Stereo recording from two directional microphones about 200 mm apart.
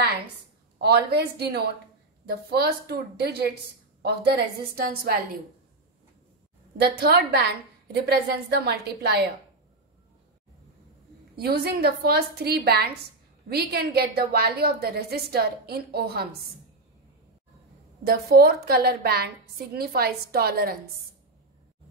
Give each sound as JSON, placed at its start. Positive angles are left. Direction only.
{"t": 0.7, "sound": "a woman's voice", "side_deg": -55}
{"t": 6.8, "sound": "a woman's voice", "side_deg": -55}
{"t": 11.3, "sound": "a woman's voice", "side_deg": -50}
{"t": 18.0, "sound": "a woman's voice", "side_deg": -50}